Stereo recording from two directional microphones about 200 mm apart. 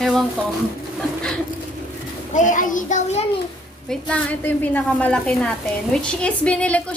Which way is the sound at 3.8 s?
5° left (ahead or behind).